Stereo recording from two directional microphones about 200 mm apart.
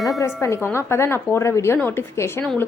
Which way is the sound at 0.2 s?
15° left (ahead or behind).